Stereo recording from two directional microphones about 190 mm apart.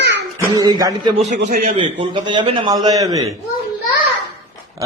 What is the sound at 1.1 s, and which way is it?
Speech, 40° right (ahead or behind).